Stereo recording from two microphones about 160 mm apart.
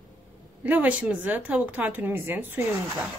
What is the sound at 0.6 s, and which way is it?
A woman's voice, 10° right (ahead or behind).